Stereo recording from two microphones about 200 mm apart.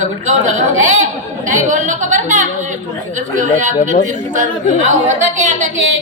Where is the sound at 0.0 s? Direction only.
40° right (ahead or behind).